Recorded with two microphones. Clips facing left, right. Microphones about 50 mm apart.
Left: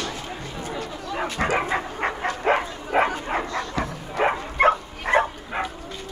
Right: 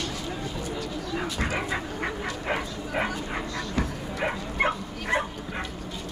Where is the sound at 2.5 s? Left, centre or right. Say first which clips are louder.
Left 7 dB; left.